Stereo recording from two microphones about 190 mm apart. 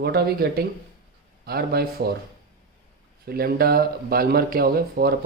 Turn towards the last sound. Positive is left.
turn(degrees=-55)  # may be behind; listen again after turning